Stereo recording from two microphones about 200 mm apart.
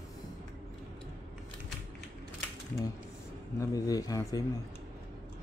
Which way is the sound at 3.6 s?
15° left (ahead or behind).